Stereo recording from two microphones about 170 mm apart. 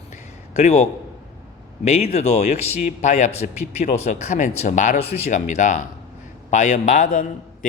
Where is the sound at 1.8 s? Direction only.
40° left (ahead or behind).